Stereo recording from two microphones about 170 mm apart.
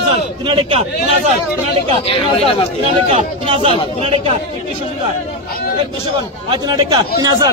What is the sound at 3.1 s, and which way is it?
Speech, 35° right (ahead or behind).